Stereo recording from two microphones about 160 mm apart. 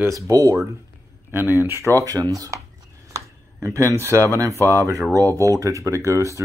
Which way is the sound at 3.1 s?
20° right (ahead or behind).